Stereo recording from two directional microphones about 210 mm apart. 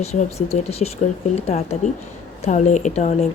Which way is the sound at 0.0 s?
30° left (ahead or behind).